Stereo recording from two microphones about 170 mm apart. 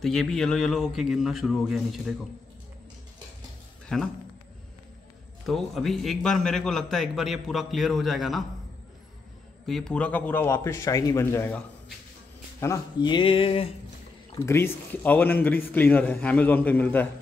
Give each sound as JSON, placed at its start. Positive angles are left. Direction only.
{"t": 0.0, "sound": "a man's voice", "side_deg": 5}
{"t": 3.9, "sound": "a man's voice", "side_deg": 5}
{"t": 5.5, "sound": "a man's voice", "side_deg": 0}
{"t": 9.7, "sound": "a man's voice", "side_deg": 5}
{"t": 14.4, "sound": "a man's voice", "side_deg": 15}